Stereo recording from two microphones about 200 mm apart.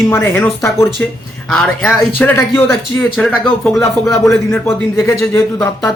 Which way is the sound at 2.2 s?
10° left (ahead or behind).